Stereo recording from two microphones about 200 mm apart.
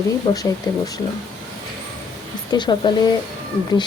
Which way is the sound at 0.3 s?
15° left (ahead or behind).